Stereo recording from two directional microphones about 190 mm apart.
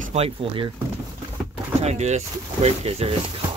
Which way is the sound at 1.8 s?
35° right (ahead or behind).